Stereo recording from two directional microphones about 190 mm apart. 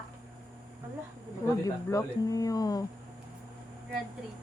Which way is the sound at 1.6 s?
20° left (ahead or behind).